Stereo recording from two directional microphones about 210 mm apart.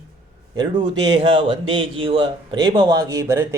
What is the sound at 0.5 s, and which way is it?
Speech, 20° right (ahead or behind).